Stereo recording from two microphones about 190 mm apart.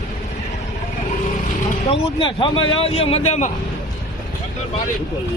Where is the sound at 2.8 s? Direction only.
30° left (ahead or behind).